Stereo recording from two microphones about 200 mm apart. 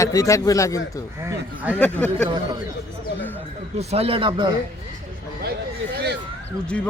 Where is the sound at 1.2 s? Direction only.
10° right (ahead or behind).